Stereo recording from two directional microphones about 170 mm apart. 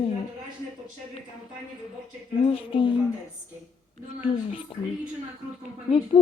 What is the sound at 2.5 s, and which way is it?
Speech, 30° left (ahead or behind).